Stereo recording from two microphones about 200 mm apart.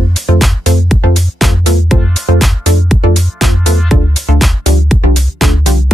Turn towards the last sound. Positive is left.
turn(degrees=0)  # may be behind; listen again after turning